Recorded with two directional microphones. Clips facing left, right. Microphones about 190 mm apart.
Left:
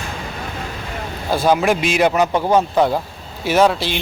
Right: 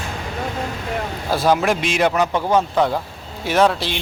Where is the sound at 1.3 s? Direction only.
Centre (ahead or behind).